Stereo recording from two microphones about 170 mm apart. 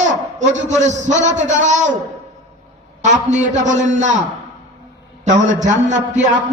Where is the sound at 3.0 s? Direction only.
45° right (ahead or behind).